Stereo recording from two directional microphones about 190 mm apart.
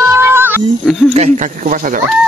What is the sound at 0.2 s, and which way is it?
Wild animals, 10° right (ahead or behind).